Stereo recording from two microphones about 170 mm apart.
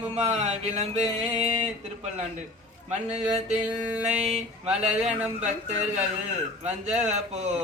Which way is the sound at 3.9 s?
5° right (ahead or behind).